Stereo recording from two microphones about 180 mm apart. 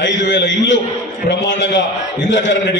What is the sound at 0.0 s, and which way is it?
A man's voice, 85° left.